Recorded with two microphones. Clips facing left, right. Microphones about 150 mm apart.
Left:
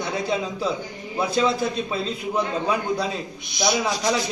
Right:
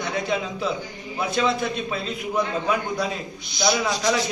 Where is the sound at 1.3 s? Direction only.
35° left (ahead or behind).